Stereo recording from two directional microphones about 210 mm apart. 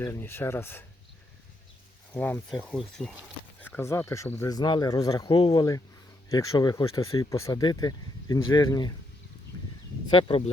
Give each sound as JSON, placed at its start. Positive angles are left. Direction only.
{"t": 0.0, "sound": "speech", "side_deg": 10}
{"t": 2.1, "sound": "speech", "side_deg": 5}
{"t": 10.1, "sound": "speech", "side_deg": 25}